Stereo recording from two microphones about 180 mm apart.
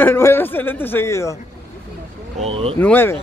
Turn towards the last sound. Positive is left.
turn(degrees=10)  # may be behind; listen again after turning